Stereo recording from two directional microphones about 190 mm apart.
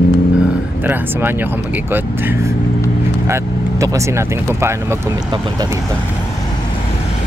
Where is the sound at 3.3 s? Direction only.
15° right (ahead or behind).